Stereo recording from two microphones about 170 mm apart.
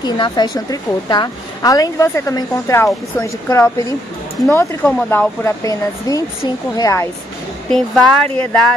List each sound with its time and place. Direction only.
0.0 s a woman's voice: 25° left (ahead or behind)
7.7 s speech: 5° left (ahead or behind)